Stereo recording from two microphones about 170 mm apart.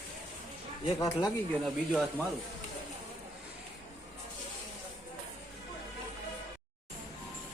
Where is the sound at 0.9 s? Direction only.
20° left (ahead or behind).